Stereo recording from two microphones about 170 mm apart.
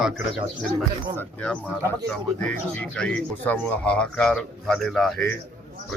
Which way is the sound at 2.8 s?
5° left (ahead or behind).